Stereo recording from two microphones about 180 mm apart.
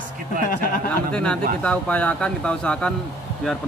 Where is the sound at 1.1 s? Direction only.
5° left (ahead or behind).